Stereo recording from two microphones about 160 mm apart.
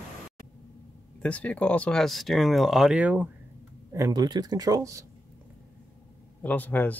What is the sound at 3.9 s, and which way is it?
Speech, 20° right (ahead or behind).